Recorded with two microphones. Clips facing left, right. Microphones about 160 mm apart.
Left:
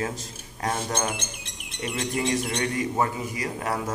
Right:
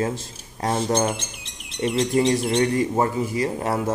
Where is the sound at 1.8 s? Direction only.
30° right (ahead or behind).